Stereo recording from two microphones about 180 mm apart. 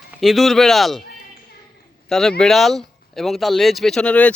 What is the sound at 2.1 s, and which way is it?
Speech, centre (ahead or behind).